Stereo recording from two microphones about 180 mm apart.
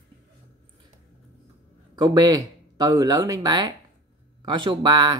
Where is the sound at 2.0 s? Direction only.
25° right (ahead or behind).